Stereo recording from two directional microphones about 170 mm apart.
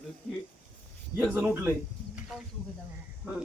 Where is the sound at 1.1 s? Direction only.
10° right (ahead or behind).